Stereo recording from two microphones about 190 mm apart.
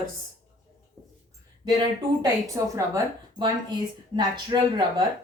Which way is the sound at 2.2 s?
15° right (ahead or behind).